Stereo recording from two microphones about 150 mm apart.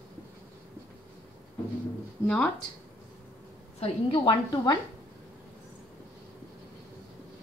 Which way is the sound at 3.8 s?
35° left (ahead or behind).